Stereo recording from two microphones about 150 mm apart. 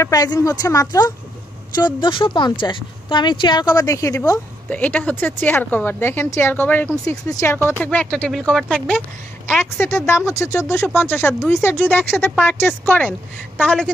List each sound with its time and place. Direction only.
0.0 s speech: 25° left (ahead or behind)
4.6 s a woman's voice: 10° left (ahead or behind)
9.5 s a woman's voice: 15° left (ahead or behind)